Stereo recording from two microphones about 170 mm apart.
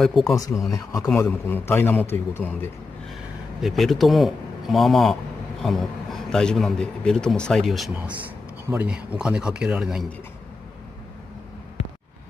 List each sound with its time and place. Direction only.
0.0 s a man's voice: centre (ahead or behind)
0.3 s a man's voice: 20° left (ahead or behind)
3.6 s a man's voice: centre (ahead or behind)